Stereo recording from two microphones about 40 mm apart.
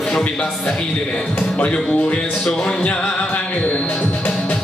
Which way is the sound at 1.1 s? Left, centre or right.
Left.